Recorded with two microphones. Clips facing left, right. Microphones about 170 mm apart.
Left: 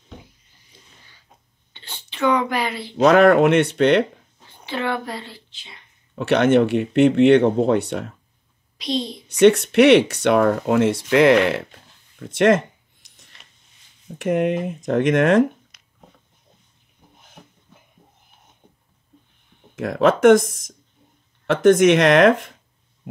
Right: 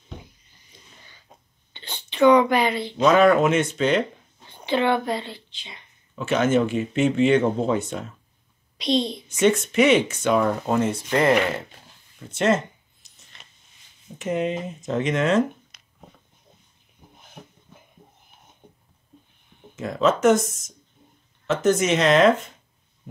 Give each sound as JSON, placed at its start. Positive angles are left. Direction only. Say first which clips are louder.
{"t": 1.7, "sound": "a sound", "louder": "right 2 dB", "side_deg": 5}
{"t": 2.1, "sound": "speech", "louder": "right 5 dB", "side_deg": -15}
{"t": 2.5, "sound": "speech", "louder": "right 3 dB", "side_deg": 5}
{"t": 3.0, "sound": "speech", "louder": "left 4 dB", "side_deg": 65}
{"t": 4.6, "sound": "speech", "louder": "right 4 dB", "side_deg": -20}
{"t": 6.1, "sound": "speech", "louder": "left 5 dB", "side_deg": 70}
{"t": 9.3, "sound": "speech", "louder": "left 7 dB", "side_deg": 70}
{"t": 12.4, "sound": "speech", "louder": "left 5 dB", "side_deg": 60}
{"t": 14.1, "sound": "speech", "louder": "left 5 dB", "side_deg": 60}
{"t": 15.7, "sound": "a sound", "louder": "right 1 dB", "side_deg": -25}
{"t": 19.8, "sound": "speech", "louder": "left 4 dB", "side_deg": 65}
{"t": 21.5, "sound": "speech", "louder": "left 7 dB", "side_deg": 65}